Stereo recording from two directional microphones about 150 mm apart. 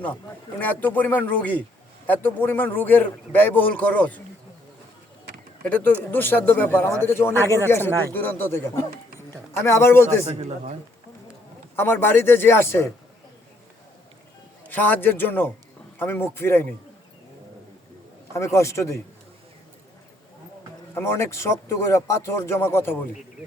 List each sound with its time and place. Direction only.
0.6 s speech: 10° left (ahead or behind)
5.6 s speech: 10° left (ahead or behind)
10.2 s a man's voice: 50° right (ahead or behind)
11.8 s speech: 15° left (ahead or behind)
14.7 s speech: 10° left (ahead or behind)
18.3 s a man's voice: 20° left (ahead or behind)
20.9 s speech: 15° left (ahead or behind)